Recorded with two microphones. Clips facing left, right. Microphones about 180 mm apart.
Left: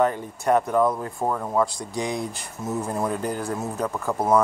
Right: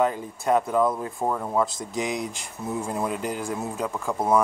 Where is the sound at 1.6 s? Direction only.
20° right (ahead or behind).